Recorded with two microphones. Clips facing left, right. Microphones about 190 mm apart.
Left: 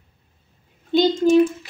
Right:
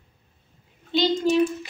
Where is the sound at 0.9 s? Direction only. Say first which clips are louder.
Left 5 dB; 50° left (ahead or behind).